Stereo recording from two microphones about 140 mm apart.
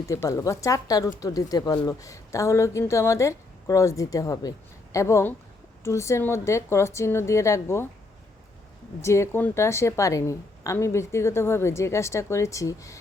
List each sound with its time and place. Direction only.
0.1 s a woman's voice: 20° left (ahead or behind)
9.0 s a woman's voice: 20° left (ahead or behind)